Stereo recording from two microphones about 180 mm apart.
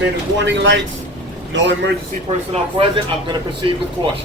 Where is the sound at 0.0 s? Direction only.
85° right.